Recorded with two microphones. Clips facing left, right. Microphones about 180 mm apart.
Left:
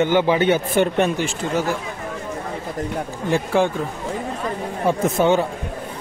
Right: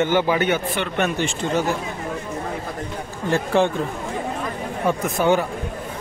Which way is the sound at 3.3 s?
10° left (ahead or behind).